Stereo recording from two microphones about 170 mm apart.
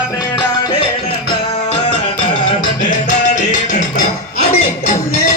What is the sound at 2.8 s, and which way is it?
Music, 45° left (ahead or behind).